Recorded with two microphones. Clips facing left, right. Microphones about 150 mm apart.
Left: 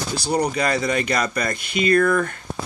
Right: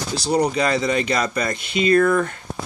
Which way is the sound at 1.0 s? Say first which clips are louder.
Right 1 dB; 30° right (ahead or behind).